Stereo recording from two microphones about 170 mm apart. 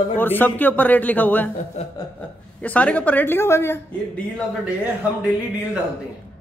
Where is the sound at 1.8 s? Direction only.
40° left (ahead or behind).